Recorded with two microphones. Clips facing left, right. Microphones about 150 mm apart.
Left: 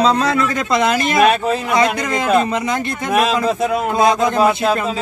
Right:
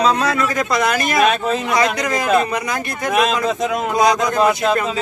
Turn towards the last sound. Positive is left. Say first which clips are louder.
# left 1 dB
turn(degrees=5)  # may be behind; listen again after turning